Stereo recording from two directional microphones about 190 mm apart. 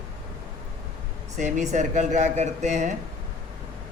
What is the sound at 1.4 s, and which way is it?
Speech, 40° right (ahead or behind).